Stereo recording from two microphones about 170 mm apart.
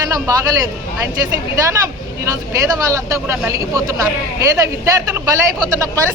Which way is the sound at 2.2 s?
20° right (ahead or behind).